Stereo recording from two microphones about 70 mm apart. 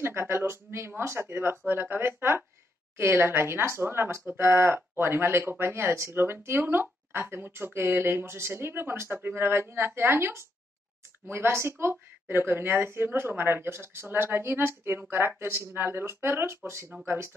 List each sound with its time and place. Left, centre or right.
0.0 s a woman's voice: right